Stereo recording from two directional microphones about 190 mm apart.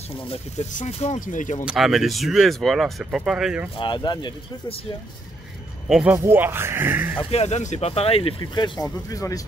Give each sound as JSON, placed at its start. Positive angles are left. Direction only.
{"t": 0.2, "sound": "speech", "side_deg": 30}
{"t": 1.7, "sound": "speech", "side_deg": 0}
{"t": 3.7, "sound": "speech", "side_deg": 25}
{"t": 5.9, "sound": "speech", "side_deg": 0}
{"t": 7.2, "sound": "speech", "side_deg": 30}